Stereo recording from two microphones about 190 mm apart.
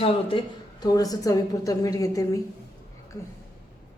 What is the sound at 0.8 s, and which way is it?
A woman's voice, 20° left (ahead or behind).